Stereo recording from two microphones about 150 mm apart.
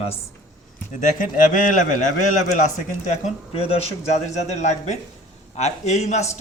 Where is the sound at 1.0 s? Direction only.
60° left (ahead or behind).